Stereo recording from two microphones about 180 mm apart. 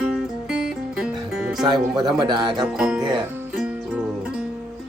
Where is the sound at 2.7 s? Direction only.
5° right (ahead or behind).